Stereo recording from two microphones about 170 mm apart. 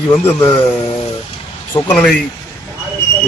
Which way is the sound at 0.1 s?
15° left (ahead or behind).